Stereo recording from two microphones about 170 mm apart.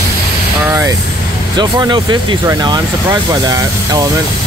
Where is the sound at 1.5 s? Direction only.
25° right (ahead or behind).